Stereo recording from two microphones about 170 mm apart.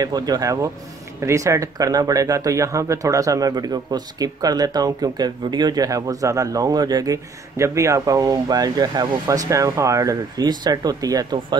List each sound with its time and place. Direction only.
0.0 s speech: 25° right (ahead or behind)